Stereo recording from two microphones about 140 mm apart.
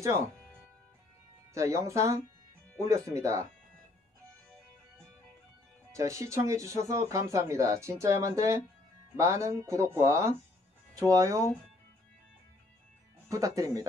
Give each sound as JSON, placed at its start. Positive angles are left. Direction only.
{"t": 0.0, "sound": "speech", "side_deg": -20}
{"t": 1.5, "sound": "speech", "side_deg": -20}
{"t": 5.9, "sound": "speech", "side_deg": -20}
{"t": 13.3, "sound": "speech", "side_deg": -25}